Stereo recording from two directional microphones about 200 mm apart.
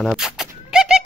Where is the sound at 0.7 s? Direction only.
5° right (ahead or behind).